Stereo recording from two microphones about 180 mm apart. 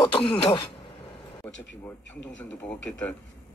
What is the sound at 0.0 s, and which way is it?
Speech, 30° left (ahead or behind).